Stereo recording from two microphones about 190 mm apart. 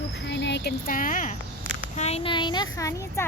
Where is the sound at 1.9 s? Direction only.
35° left (ahead or behind).